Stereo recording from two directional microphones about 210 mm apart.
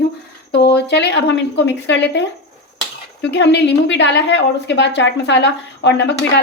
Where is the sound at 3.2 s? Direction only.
55° left (ahead or behind).